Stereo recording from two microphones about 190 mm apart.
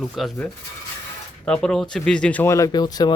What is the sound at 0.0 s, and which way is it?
Speech, centre (ahead or behind).